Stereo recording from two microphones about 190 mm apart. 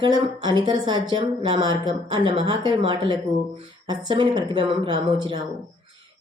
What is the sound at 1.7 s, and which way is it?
Speech, 25° left (ahead or behind).